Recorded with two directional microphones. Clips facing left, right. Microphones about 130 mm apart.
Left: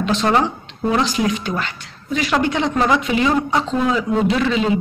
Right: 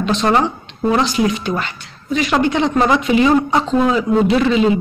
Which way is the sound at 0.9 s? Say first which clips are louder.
Right 2 dB; 25° right (ahead or behind).